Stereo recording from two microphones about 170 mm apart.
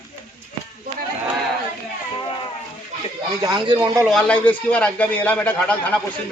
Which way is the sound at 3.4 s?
25° right (ahead or behind).